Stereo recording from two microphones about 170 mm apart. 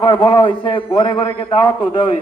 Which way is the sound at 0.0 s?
30° left (ahead or behind).